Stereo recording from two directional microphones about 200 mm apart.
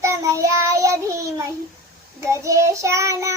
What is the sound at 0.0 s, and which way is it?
Child singing, 15° right (ahead or behind).